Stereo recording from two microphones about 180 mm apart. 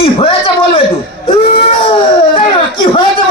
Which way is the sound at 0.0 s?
30° left (ahead or behind).